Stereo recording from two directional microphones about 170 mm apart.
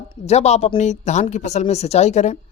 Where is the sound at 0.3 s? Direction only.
40° left (ahead or behind).